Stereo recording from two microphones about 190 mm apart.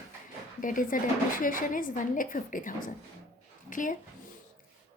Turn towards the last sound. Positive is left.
turn(degrees=45)  # may be behind; listen again after turning